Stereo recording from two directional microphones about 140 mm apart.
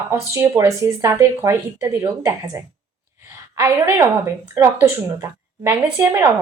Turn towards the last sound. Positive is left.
turn(degrees=-20)  # may be behind; listen again after turning